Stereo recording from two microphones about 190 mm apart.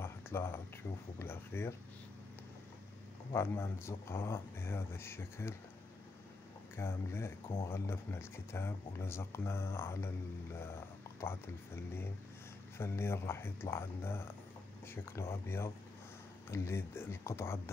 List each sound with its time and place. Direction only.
0.0 s a sound: 15° left (ahead or behind)
0.8 s speech: 15° left (ahead or behind)
3.3 s speech: 15° left (ahead or behind)
6.8 s speech: 15° left (ahead or behind)